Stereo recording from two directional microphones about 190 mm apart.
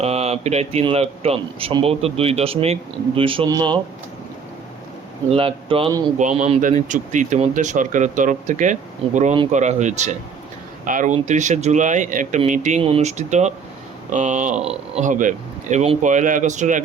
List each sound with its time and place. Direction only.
0.0 s speech: 35° right (ahead or behind)
5.3 s speech: 30° right (ahead or behind)
6.1 s speech: 40° right (ahead or behind)